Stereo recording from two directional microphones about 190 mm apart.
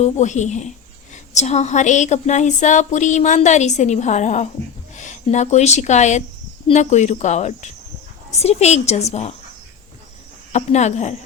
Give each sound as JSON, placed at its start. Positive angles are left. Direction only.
{"t": 0.0, "sound": "a woman's voice", "side_deg": 40}
{"t": 10.5, "sound": "a woman's voice", "side_deg": 35}